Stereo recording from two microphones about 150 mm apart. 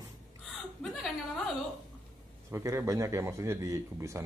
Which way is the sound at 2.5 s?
15° right (ahead or behind).